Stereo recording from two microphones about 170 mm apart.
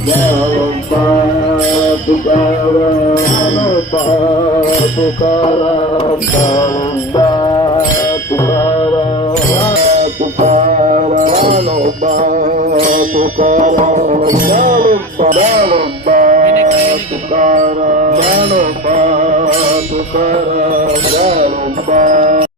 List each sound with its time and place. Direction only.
10.4 s music: 40° right (ahead or behind)
12.8 s music: 55° right (ahead or behind)
14.3 s music: 55° right (ahead or behind)
15.4 s music: 40° right (ahead or behind)
16.1 s music: 55° right (ahead or behind)
21.2 s music: 35° right (ahead or behind)
21.9 s music: 50° right (ahead or behind)